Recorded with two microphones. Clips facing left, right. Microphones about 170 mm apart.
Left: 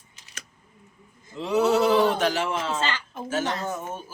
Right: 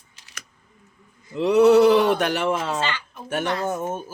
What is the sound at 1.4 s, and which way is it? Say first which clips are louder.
Speech: right 7 dB; 65° right (ahead or behind).